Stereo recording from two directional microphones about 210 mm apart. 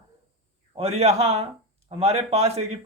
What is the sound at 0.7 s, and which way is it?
A man's voice, 30° right (ahead or behind).